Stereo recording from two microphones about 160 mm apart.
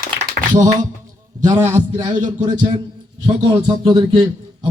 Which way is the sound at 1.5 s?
15° right (ahead or behind).